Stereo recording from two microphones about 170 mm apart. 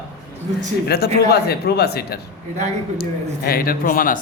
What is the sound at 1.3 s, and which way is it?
A man's voice, 75° left (ahead or behind).